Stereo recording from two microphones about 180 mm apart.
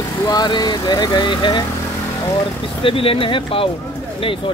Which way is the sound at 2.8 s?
30° left (ahead or behind).